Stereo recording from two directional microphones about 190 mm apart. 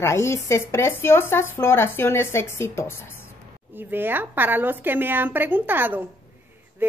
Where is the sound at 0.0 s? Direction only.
15° left (ahead or behind).